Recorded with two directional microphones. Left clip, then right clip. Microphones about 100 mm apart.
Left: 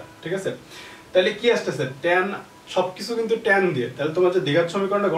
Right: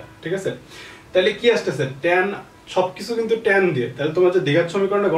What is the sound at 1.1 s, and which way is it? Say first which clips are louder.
Speech: right 2 dB; centre (ahead or behind).